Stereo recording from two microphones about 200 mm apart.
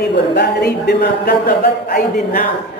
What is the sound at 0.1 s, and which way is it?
A man's voice, 55° left (ahead or behind).